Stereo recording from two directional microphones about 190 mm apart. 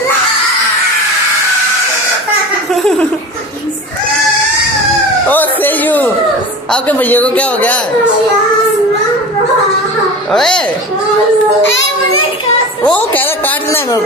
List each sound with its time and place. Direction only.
2.7 s laughter: centre (ahead or behind)
5.3 s a sound: 10° left (ahead or behind)
6.7 s a man's voice: 10° left (ahead or behind)
10.3 s a woman's voice: 5° left (ahead or behind)
11.6 s a child's voice: 75° left (ahead or behind)
12.8 s a sound: 10° left (ahead or behind)